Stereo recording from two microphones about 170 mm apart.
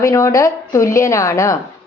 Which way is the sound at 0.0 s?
20° left (ahead or behind).